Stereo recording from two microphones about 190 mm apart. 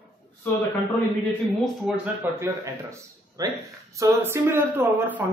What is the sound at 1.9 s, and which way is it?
Speech, 5° right (ahead or behind).